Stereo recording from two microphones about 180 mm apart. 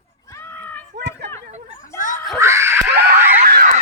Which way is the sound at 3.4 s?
55° right (ahead or behind).